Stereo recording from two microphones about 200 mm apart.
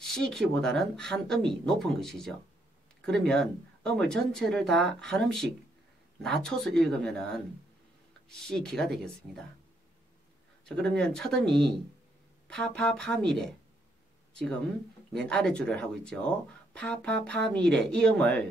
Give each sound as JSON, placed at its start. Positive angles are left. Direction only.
{"t": 0.0, "sound": "speech", "side_deg": 0}
{"t": 10.6, "sound": "speech", "side_deg": 5}
{"t": 15.1, "sound": "speech", "side_deg": 5}